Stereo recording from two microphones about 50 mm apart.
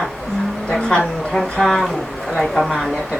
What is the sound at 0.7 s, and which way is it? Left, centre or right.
A woman's voice, centre.